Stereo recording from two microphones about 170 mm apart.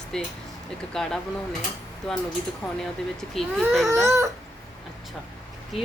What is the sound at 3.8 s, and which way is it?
Crying, 15° right (ahead or behind).